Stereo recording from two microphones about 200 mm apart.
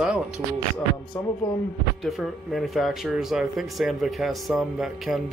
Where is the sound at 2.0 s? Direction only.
Centre (ahead or behind).